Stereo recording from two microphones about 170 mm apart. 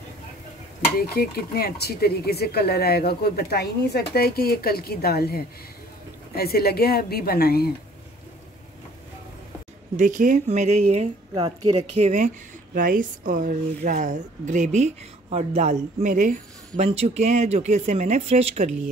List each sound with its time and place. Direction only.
0.9 s speech: 65° left (ahead or behind)
9.9 s speech: 50° right (ahead or behind)
11.3 s a woman's voice: 30° right (ahead or behind)
12.7 s speech: 55° right (ahead or behind); by 18.7 s 40° right (ahead or behind)